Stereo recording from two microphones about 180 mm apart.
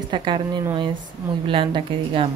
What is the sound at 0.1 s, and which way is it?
Speech, 25° right (ahead or behind).